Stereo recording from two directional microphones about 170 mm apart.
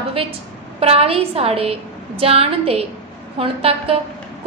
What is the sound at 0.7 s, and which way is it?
A woman's voice, 35° right (ahead or behind).